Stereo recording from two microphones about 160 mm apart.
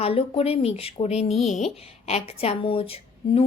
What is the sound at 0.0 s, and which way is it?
A woman's voice, 40° left (ahead or behind).